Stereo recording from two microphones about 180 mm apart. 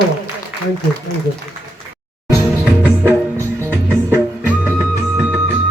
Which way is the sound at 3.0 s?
15° right (ahead or behind).